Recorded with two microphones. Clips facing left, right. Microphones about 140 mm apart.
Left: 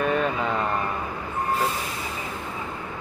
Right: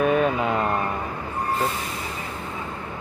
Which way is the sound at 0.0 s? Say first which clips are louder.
Right 3 dB; 5° right (ahead or behind).